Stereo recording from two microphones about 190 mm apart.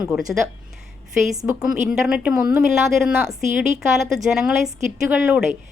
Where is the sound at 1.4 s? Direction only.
5° right (ahead or behind).